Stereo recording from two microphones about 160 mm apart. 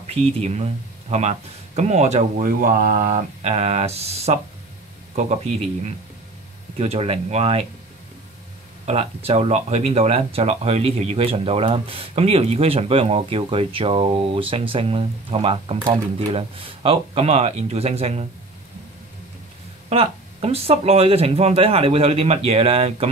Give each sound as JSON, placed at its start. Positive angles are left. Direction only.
{"t": 0.0, "sound": "speech", "side_deg": -40}
{"t": 6.8, "sound": "speech", "side_deg": -40}
{"t": 8.8, "sound": "speech", "side_deg": -40}
{"t": 19.9, "sound": "speech", "side_deg": -40}